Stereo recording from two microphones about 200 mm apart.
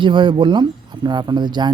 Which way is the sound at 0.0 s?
25° right (ahead or behind).